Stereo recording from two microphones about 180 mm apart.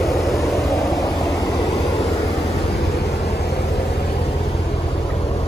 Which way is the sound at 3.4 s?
65° left (ahead or behind).